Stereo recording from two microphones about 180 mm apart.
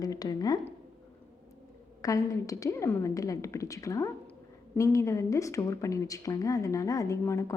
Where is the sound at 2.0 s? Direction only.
20° left (ahead or behind).